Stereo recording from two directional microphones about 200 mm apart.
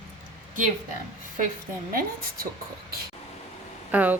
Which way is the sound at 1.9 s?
45° right (ahead or behind).